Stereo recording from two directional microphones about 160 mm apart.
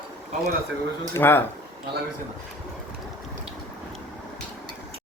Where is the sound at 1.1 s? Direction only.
15° left (ahead or behind).